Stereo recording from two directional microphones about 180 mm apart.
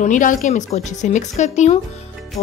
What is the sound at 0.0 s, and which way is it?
A woman's voice, 45° left (ahead or behind).